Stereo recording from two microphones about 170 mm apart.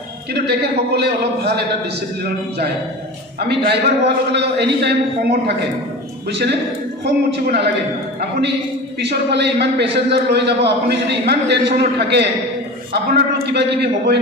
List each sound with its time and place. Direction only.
0.3 s a man's voice: 70° right (ahead or behind)
9.0 s a man's voice: 80° right